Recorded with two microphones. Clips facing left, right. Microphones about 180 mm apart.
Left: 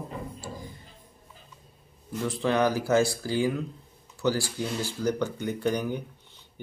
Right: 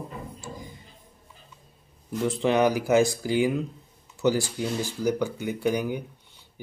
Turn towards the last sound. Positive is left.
turn(degrees=-10)  # may be behind; listen again after turning